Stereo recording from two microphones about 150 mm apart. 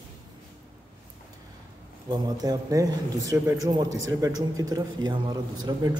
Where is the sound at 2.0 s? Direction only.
25° right (ahead or behind).